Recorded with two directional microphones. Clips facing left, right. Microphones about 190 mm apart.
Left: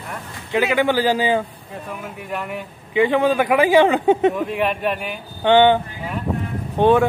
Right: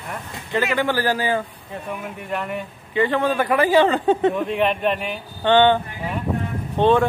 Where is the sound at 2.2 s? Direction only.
5° left (ahead or behind).